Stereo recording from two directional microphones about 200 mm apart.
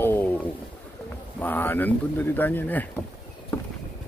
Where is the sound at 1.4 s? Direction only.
10° left (ahead or behind).